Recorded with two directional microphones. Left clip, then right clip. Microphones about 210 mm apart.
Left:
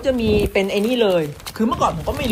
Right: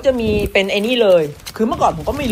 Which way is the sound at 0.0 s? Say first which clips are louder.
Right 2 dB; 5° left (ahead or behind).